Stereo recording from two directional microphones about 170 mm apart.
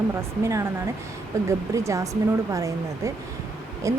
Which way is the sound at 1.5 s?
15° right (ahead or behind).